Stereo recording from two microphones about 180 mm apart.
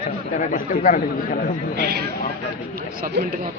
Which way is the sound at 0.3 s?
50° left (ahead or behind).